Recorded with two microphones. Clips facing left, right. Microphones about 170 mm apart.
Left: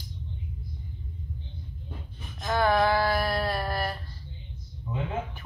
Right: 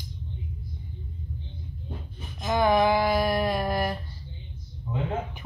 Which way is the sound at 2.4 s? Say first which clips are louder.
Right 2 dB; 15° right (ahead or behind).